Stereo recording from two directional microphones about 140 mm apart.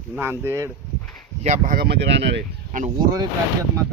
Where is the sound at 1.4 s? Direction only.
55° right (ahead or behind).